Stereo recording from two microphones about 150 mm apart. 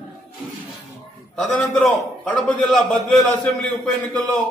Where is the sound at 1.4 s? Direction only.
5° left (ahead or behind).